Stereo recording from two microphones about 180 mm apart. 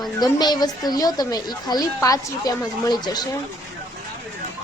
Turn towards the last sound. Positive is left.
turn(degrees=25)  # may be behind; listen again after turning